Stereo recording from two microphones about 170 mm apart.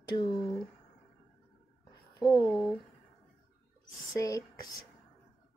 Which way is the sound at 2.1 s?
25° left (ahead or behind).